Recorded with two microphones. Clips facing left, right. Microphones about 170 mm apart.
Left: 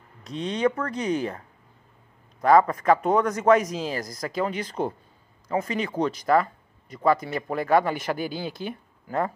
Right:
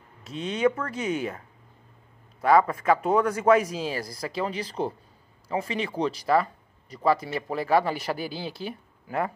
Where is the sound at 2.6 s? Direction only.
35° left (ahead or behind).